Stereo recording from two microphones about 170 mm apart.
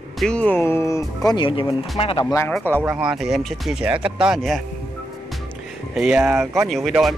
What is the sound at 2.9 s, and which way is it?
Speech, 5° right (ahead or behind).